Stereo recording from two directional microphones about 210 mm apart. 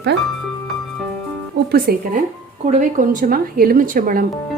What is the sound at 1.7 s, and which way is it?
A woman's voice, 45° right (ahead or behind).